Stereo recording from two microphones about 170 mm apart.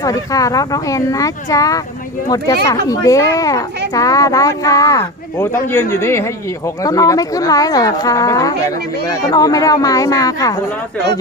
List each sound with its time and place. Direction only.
0.0 s a woman's voice: 20° left (ahead or behind)